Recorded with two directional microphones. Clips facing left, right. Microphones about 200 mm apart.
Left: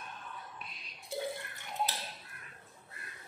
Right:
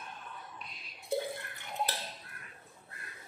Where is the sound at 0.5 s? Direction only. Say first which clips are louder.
Even; centre (ahead or behind).